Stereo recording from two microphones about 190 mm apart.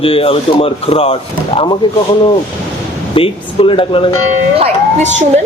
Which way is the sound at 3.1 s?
30° left (ahead or behind).